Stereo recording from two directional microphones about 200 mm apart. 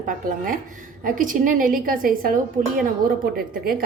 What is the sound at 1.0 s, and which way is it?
A woman's voice, 40° right (ahead or behind).